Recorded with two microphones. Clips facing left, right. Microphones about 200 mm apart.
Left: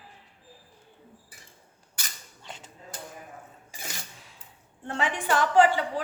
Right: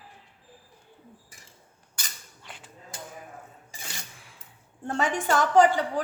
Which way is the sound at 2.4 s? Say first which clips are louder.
Left 3 dB; 25° left (ahead or behind).